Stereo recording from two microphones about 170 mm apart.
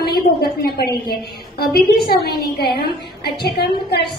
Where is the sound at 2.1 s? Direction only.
65° left (ahead or behind).